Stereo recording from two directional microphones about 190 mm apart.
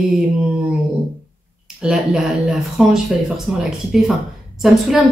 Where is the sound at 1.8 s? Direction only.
5° right (ahead or behind).